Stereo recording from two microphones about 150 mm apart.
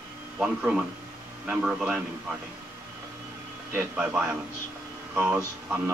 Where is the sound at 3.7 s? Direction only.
10° right (ahead or behind).